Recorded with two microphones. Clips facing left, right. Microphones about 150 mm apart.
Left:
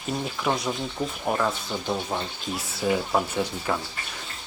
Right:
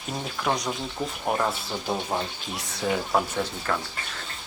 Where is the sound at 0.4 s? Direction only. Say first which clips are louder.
Even; 5° left (ahead or behind).